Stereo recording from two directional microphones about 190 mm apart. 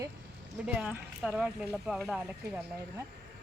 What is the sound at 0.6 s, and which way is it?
Speech, 5° right (ahead or behind).